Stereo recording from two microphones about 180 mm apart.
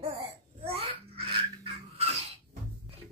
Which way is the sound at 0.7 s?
35° right (ahead or behind).